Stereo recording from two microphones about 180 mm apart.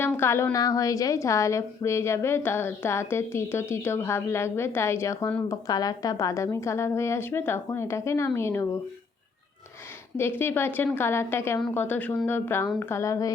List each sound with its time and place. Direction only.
0.0 s a woman's voice: 15° left (ahead or behind)
10.2 s a woman's voice: 10° left (ahead or behind)